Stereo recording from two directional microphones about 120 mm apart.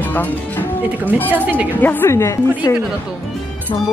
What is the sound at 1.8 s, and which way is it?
Speech, 15° left (ahead or behind).